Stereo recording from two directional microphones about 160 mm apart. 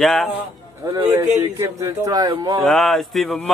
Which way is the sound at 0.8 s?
15° right (ahead or behind).